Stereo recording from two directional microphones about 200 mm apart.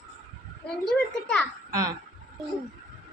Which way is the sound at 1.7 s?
15° right (ahead or behind).